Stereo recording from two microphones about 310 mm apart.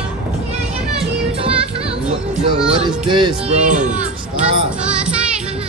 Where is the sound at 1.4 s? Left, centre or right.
Centre.